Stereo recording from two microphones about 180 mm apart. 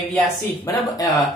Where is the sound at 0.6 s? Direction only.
20° left (ahead or behind).